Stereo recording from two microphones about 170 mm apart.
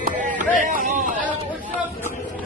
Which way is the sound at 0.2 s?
50° right (ahead or behind).